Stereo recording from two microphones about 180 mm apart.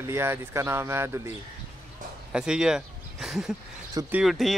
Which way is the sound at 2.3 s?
5° right (ahead or behind).